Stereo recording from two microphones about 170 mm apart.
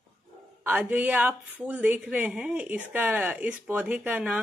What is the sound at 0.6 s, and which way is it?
Speech, 10° right (ahead or behind).